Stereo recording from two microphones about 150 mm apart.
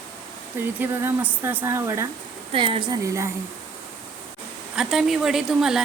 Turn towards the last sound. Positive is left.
turn(degrees=-5)  # may be behind; listen again after turning